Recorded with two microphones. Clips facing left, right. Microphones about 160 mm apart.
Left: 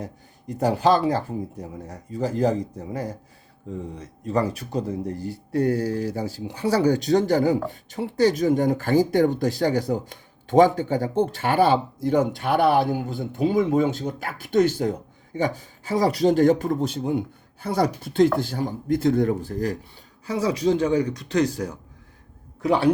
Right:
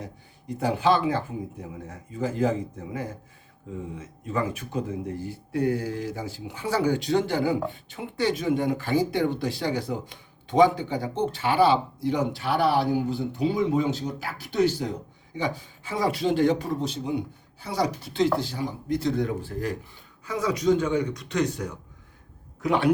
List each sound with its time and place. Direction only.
0.0 s speech: 40° left (ahead or behind)